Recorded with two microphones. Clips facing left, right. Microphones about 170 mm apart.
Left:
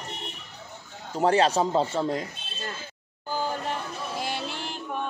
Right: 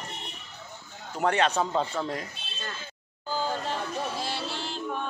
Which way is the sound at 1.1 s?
30° left (ahead or behind).